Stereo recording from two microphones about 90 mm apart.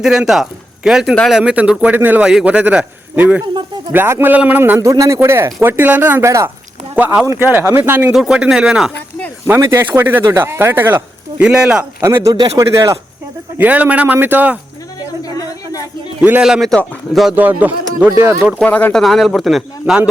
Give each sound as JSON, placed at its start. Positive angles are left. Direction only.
{"t": 0.0, "sound": "a man's voice", "side_deg": -5}
{"t": 3.4, "sound": "a sound", "side_deg": -60}
{"t": 3.9, "sound": "speech", "side_deg": -25}
{"t": 4.8, "sound": "a man's voice", "side_deg": -35}
{"t": 8.1, "sound": "speech", "side_deg": -5}
{"t": 9.6, "sound": "a man's voice", "side_deg": -30}
{"t": 11.4, "sound": "speech", "side_deg": -10}
{"t": 11.9, "sound": "a man's voice", "side_deg": -30}
{"t": 13.6, "sound": "speech", "side_deg": -15}
{"t": 14.9, "sound": "a sound", "side_deg": 45}
{"t": 16.4, "sound": "a man's voice", "side_deg": 0}
{"t": 17.3, "sound": "speech", "side_deg": -20}
{"t": 18.6, "sound": "speech", "side_deg": 15}
{"t": 18.9, "sound": "a man's voice", "side_deg": 0}